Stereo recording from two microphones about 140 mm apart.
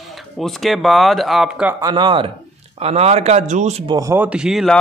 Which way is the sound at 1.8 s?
35° right (ahead or behind).